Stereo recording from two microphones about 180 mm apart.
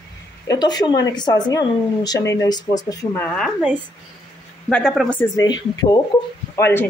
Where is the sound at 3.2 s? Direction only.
Centre (ahead or behind).